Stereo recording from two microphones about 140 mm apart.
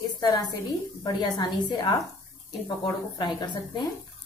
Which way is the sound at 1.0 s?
30° left (ahead or behind).